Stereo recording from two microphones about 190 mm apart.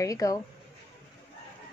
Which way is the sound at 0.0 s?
15° left (ahead or behind).